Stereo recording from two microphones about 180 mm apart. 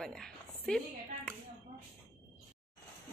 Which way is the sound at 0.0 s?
5° left (ahead or behind).